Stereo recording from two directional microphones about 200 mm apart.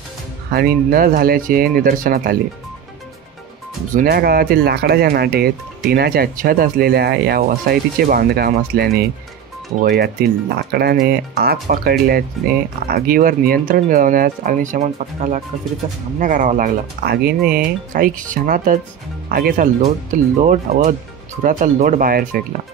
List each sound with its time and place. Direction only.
0.5 s speech: 50° right (ahead or behind)
3.9 s speech: 50° right (ahead or behind)
15.8 s speech: 25° right (ahead or behind)
16.2 s speech: 40° right (ahead or behind)